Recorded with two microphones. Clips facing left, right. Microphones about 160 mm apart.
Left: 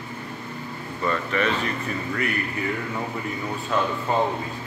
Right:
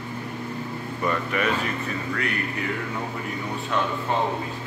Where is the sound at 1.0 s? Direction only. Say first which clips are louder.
Left 1 dB; 10° right (ahead or behind).